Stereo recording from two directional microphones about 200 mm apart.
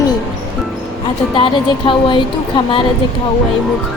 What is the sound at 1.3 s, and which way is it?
Speech, 25° left (ahead or behind).